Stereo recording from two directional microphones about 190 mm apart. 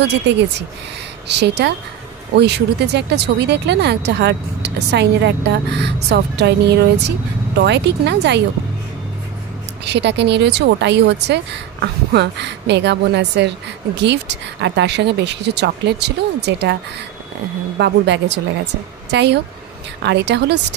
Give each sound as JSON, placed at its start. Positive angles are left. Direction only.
{"t": 0.3, "sound": "speech", "side_deg": -65}
{"t": 9.8, "sound": "speech", "side_deg": -65}
{"t": 17.7, "sound": "speech", "side_deg": -65}